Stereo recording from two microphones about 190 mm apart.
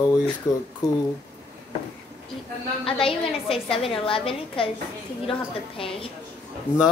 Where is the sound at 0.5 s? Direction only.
15° left (ahead or behind).